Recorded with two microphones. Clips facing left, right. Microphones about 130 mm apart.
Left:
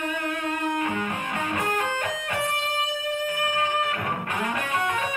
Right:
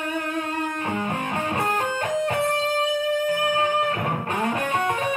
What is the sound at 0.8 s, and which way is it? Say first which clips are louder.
Music: right 1 dB; 35° right (ahead or behind).